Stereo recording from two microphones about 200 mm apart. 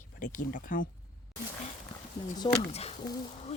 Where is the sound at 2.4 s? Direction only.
25° left (ahead or behind).